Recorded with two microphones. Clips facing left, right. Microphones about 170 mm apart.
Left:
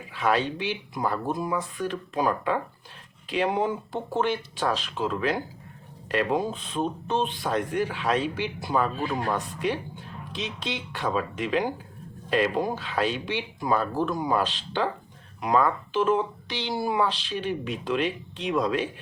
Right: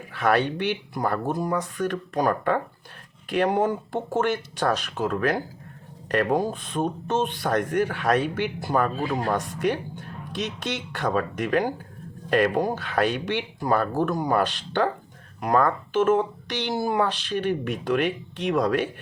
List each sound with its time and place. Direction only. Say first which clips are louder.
0.1 s speech: right 3 dB; 60° right (ahead or behind)
1.4 s speech: right 3 dB; 45° right (ahead or behind)